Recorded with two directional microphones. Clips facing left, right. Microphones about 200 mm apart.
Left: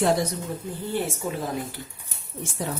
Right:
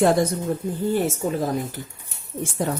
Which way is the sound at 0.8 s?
45° right (ahead or behind).